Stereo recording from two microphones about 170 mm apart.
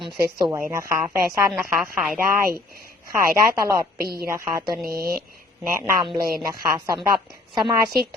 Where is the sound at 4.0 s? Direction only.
60° right (ahead or behind).